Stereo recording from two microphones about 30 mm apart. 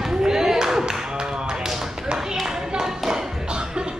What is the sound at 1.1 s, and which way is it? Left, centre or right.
Speech, right.